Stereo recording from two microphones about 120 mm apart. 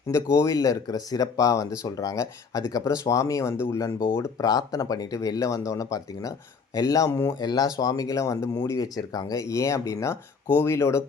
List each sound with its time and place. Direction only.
0.3 s speech: 30° left (ahead or behind)
7.3 s speech: 35° left (ahead or behind)